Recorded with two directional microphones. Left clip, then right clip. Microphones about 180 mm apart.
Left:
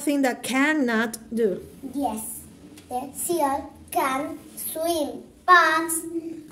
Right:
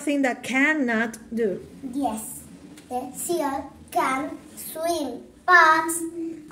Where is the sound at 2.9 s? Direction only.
10° left (ahead or behind).